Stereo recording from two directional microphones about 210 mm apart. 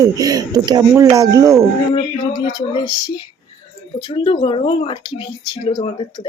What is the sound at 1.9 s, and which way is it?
Speech, 20° left (ahead or behind).